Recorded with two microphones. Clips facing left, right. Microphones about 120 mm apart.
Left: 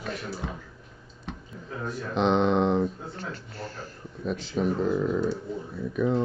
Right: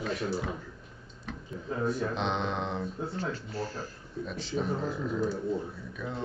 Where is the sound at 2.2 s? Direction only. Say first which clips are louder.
Left 9 dB; 60° left (ahead or behind).